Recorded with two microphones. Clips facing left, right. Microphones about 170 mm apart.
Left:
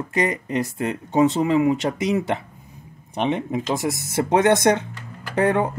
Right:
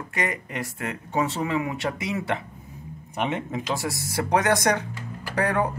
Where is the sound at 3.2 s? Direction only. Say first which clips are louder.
Left 5 dB; 15° left (ahead or behind).